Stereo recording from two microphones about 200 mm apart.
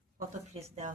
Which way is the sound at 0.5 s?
35° right (ahead or behind).